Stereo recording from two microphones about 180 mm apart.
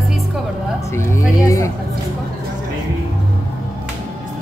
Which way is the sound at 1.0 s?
15° left (ahead or behind).